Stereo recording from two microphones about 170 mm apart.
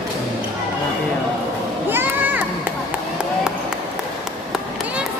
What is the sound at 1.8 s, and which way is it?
Children playing, 10° right (ahead or behind).